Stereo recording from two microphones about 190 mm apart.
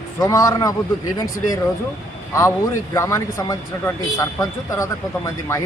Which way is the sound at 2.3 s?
15° left (ahead or behind).